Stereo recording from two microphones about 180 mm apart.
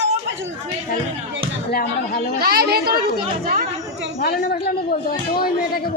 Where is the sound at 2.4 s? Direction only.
60° right (ahead or behind).